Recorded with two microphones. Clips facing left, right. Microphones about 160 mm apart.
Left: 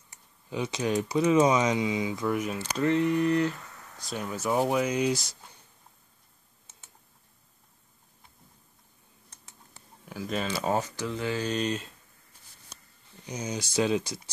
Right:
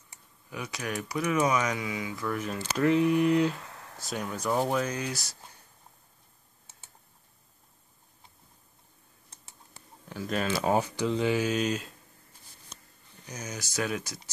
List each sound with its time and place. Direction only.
0.5 s speech: 25° left (ahead or behind)
2.3 s speech: 10° left (ahead or behind)
2.8 s speech: 15° right (ahead or behind)
4.0 s speech: centre (ahead or behind); by 5.4 s 20° left (ahead or behind)
10.0 s speech: 5° left (ahead or behind)
13.4 s speech: 25° left (ahead or behind)